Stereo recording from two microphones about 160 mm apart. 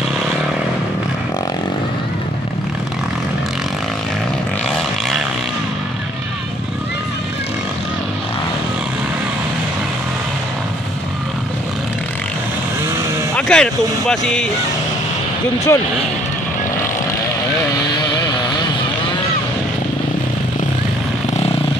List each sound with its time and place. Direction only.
13.4 s speech: 5° left (ahead or behind)
15.7 s speech: 15° left (ahead or behind)